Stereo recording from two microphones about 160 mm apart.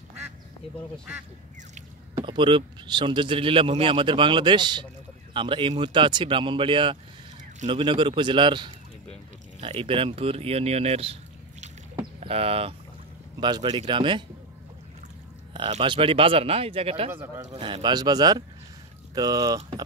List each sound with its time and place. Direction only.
2.2 s a man's voice: 30° right (ahead or behind)
12.0 s boat: 40° right (ahead or behind)
13.4 s a man's voice: 30° right (ahead or behind)
15.8 s speech: 30° right (ahead or behind)
17.1 s a man's voice: 15° right (ahead or behind)
17.5 s a man's voice: 30° right (ahead or behind)